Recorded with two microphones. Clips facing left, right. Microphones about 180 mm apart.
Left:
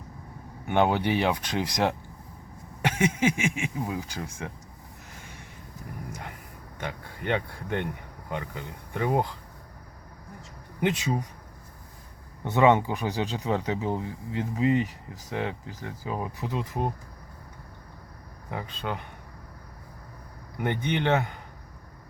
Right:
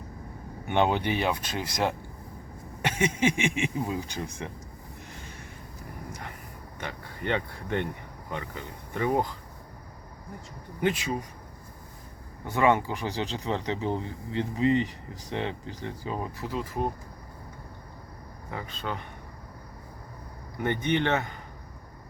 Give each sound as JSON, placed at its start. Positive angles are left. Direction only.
{"t": 0.7, "sound": "speech", "side_deg": 10}
{"t": 6.7, "sound": "speech", "side_deg": 10}
{"t": 10.8, "sound": "speech", "side_deg": 20}
{"t": 12.5, "sound": "speech", "side_deg": 20}
{"t": 16.4, "sound": "speech", "side_deg": 20}
{"t": 18.5, "sound": "speech", "side_deg": 15}
{"t": 20.6, "sound": "speech", "side_deg": 15}